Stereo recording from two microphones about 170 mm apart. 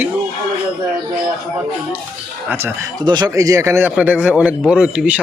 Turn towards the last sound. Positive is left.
turn(degrees=-5)  # may be behind; listen again after turning